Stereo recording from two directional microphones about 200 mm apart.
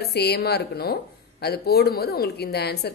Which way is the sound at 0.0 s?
55° left (ahead or behind).